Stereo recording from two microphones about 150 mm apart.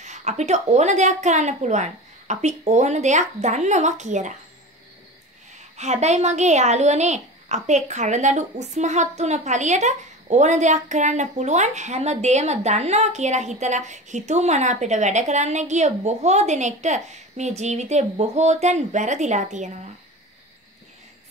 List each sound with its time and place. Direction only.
0.0 s a woman's voice: 50° right (ahead or behind)
5.8 s a woman's voice: 50° right (ahead or behind)